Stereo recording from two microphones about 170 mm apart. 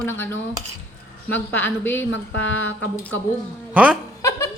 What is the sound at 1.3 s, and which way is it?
Speech, 10° left (ahead or behind).